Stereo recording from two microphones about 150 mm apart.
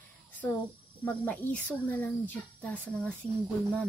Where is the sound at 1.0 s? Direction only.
10° left (ahead or behind).